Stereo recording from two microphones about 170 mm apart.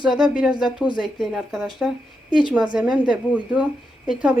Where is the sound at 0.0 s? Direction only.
5° right (ahead or behind).